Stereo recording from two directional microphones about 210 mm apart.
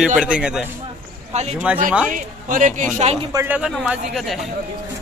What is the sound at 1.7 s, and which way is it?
Speech, 5° right (ahead or behind).